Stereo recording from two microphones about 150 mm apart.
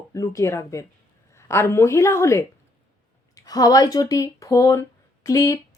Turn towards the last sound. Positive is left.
turn(degrees=20)  # may be behind; listen again after turning